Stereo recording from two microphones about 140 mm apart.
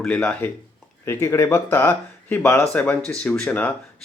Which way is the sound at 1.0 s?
20° left (ahead or behind).